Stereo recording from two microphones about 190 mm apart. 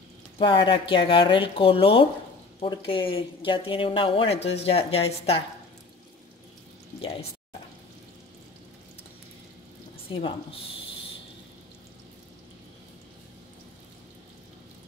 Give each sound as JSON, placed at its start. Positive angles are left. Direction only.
{"t": 0.4, "sound": "speech", "side_deg": 25}
{"t": 7.0, "sound": "speech", "side_deg": 30}